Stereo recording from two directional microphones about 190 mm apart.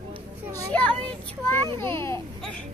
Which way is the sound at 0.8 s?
10° left (ahead or behind).